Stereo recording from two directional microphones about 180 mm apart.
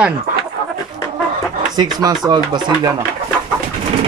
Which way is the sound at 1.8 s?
20° right (ahead or behind).